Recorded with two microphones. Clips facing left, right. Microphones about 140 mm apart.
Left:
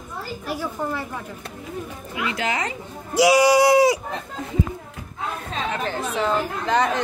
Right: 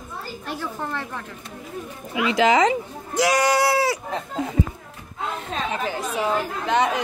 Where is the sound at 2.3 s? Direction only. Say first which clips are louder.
Right 11 dB; 90° right.